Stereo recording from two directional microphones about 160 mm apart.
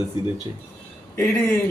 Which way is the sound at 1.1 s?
15° left (ahead or behind).